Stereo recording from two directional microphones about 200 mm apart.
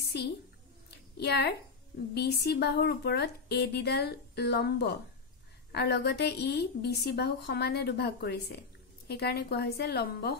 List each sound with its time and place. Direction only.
0.1 s a woman's voice: 55° left (ahead or behind)
0.8 s a sound: 55° left (ahead or behind)
2.1 s a woman's voice: 55° left (ahead or behind)